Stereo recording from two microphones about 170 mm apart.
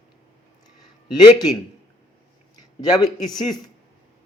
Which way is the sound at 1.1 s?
25° left (ahead or behind).